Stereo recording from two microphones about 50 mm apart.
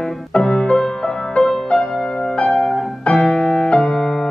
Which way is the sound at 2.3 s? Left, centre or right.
Centre.